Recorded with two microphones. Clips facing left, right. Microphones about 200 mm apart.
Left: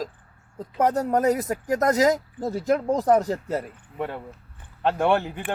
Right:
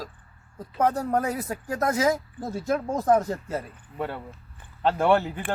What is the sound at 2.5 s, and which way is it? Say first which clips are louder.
Speech: left 4 dB; 15° left (ahead or behind).